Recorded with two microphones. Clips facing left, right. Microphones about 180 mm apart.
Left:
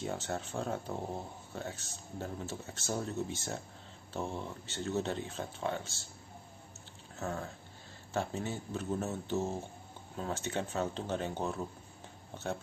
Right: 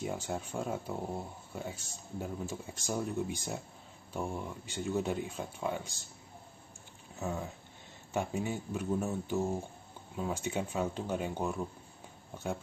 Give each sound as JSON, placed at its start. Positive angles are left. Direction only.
{"t": 0.0, "sound": "speech", "side_deg": -10}
{"t": 7.2, "sound": "speech", "side_deg": -15}